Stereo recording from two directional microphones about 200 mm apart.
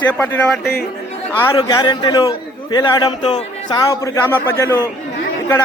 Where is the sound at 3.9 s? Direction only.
10° left (ahead or behind).